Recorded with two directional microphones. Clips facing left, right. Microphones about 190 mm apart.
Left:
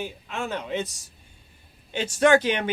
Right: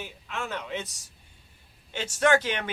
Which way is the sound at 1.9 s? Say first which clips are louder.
Left 4 dB; 15° left (ahead or behind).